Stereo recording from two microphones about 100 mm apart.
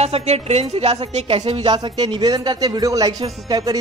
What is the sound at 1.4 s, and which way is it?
Speech, 60° right (ahead or behind).